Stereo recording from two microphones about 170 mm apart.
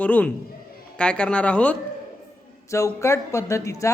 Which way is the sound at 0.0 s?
10° left (ahead or behind).